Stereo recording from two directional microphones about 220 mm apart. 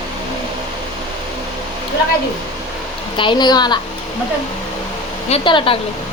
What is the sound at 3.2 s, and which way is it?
Speech, 20° left (ahead or behind).